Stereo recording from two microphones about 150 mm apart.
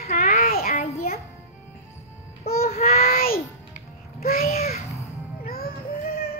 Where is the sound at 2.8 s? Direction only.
80° left.